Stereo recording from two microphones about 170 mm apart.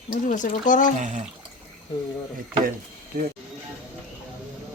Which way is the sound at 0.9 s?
45° right (ahead or behind).